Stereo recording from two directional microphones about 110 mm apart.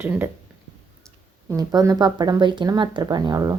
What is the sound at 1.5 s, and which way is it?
A woman's voice, 30° right (ahead or behind).